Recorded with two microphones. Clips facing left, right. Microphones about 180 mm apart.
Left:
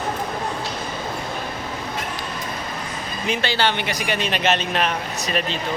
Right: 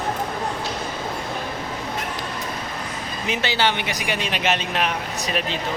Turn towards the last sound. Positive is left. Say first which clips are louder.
# left 1 dB
turn(degrees=-5)  # may be behind; listen again after turning